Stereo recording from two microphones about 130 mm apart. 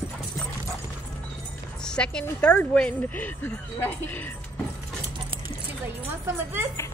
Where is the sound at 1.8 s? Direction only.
5° left (ahead or behind).